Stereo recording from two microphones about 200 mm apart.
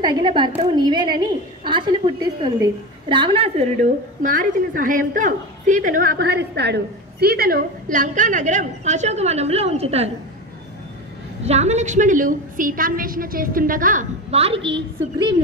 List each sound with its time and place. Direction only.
0.0 s a woman's voice: 25° right (ahead or behind)
11.4 s a woman's voice: 35° right (ahead or behind)